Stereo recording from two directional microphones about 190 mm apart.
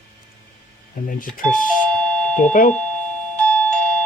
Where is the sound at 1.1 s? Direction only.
45° left (ahead or behind).